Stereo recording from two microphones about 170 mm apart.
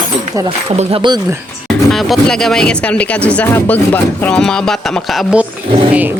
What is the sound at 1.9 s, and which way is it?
Speech, centre (ahead or behind).